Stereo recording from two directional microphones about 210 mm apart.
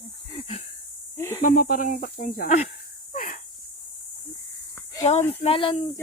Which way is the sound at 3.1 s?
40° left (ahead or behind).